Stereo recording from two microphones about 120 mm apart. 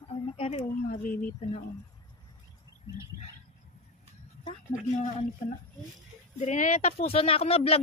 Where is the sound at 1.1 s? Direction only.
15° left (ahead or behind).